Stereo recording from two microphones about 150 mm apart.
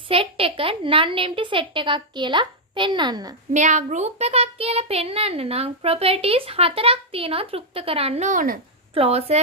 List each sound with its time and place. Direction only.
0.1 s a woman's voice: 40° right (ahead or behind)
3.5 s a child's voice: 55° right (ahead or behind)
8.9 s a child's voice: 40° right (ahead or behind)